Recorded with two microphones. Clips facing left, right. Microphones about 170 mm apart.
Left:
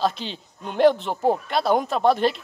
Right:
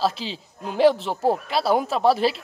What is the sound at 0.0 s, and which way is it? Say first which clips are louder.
Speech: even; centre (ahead or behind).